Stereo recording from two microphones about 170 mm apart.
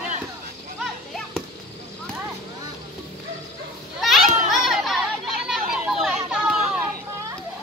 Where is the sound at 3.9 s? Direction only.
Centre (ahead or behind).